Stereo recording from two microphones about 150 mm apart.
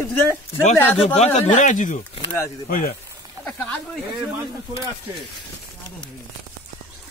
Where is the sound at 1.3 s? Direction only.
55° left (ahead or behind).